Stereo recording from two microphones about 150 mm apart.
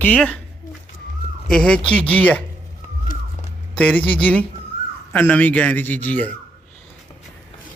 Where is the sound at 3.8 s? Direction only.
10° left (ahead or behind).